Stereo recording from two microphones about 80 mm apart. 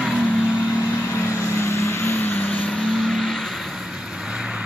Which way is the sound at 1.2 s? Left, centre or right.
Left.